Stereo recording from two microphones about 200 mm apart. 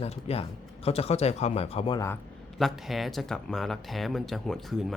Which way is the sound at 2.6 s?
Centre (ahead or behind).